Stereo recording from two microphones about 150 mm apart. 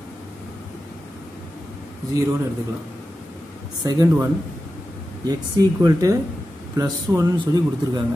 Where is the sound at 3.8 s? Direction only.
20° right (ahead or behind).